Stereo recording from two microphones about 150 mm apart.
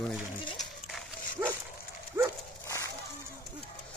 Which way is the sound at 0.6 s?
Centre (ahead or behind).